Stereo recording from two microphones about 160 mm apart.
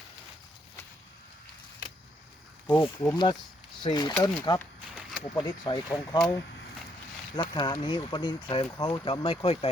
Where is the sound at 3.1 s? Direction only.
25° left (ahead or behind).